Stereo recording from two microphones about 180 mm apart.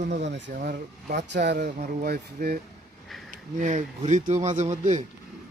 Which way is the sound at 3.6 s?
45° right (ahead or behind).